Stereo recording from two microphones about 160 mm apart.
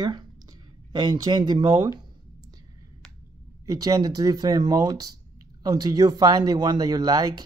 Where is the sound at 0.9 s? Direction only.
25° right (ahead or behind).